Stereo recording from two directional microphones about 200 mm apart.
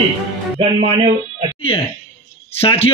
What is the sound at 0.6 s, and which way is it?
Speech, 25° right (ahead or behind).